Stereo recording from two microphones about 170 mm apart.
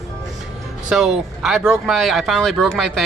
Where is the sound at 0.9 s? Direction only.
Centre (ahead or behind).